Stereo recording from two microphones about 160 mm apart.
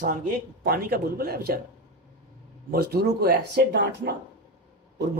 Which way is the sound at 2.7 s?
75° right (ahead or behind).